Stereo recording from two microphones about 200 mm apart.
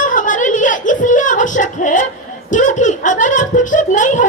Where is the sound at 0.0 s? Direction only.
40° left (ahead or behind).